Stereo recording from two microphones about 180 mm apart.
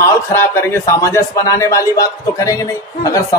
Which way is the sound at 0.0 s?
15° left (ahead or behind).